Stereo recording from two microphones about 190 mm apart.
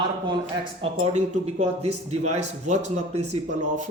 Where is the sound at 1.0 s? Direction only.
35° right (ahead or behind).